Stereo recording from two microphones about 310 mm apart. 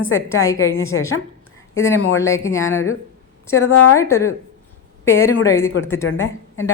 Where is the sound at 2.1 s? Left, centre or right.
Centre.